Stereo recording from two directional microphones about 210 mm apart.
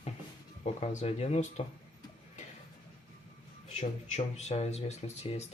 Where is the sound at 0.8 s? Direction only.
30° left (ahead or behind).